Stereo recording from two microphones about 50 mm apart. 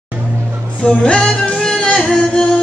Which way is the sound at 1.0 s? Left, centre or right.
Centre.